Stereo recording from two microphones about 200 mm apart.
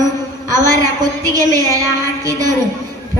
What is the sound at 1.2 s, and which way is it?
Speech, 15° right (ahead or behind).